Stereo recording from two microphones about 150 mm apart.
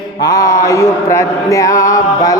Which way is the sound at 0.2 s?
25° left (ahead or behind).